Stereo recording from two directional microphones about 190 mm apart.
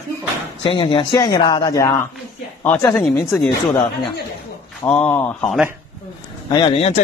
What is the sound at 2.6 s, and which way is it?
Speech, 5° left (ahead or behind).